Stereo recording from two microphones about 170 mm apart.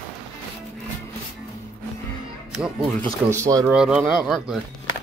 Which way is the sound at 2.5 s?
5° right (ahead or behind).